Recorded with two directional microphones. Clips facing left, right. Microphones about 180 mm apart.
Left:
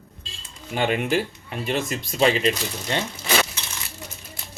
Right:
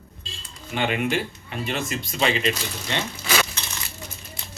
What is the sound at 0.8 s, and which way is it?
Speech, 40° left (ahead or behind).